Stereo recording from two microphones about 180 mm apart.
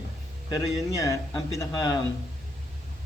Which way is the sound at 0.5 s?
20° left (ahead or behind).